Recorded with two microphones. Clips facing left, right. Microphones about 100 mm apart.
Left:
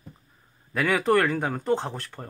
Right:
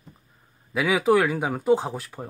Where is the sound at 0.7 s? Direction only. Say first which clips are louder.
Right 2 dB; 5° right (ahead or behind).